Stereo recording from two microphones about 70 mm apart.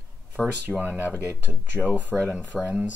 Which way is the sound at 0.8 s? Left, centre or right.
Left.